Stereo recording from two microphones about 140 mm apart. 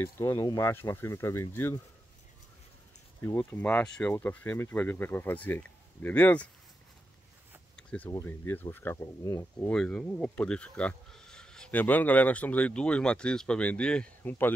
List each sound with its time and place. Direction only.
0.0 s speech: 20° left (ahead or behind)
3.2 s speech: 15° left (ahead or behind)
7.7 s a sound: 10° left (ahead or behind)
8.1 s speech: 20° left (ahead or behind)
9.7 s speech: 5° left (ahead or behind)